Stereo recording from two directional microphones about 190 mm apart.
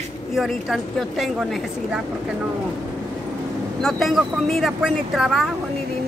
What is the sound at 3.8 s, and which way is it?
Speech, centre (ahead or behind).